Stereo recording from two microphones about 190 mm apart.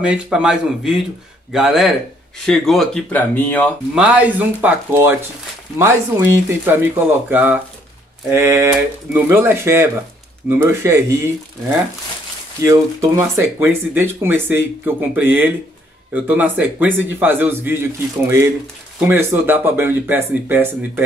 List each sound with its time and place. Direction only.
0.0 s speech: 5° right (ahead or behind)
3.9 s speech: 5° right (ahead or behind)
12.6 s speech: 15° right (ahead or behind)